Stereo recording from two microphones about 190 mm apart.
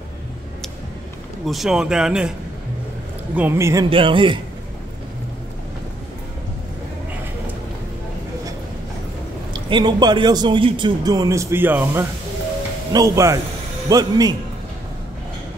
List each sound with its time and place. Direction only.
1.4 s a man's voice: centre (ahead or behind)
3.3 s speech: 10° right (ahead or behind)
3.9 s speech: 25° right (ahead or behind)
9.5 s speech: 25° right (ahead or behind)